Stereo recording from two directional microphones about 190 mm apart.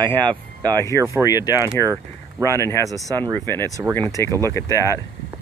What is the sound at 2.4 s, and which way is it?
Speech, 15° left (ahead or behind).